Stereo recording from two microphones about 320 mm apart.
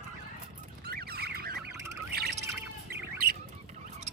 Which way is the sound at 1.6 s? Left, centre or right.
Centre.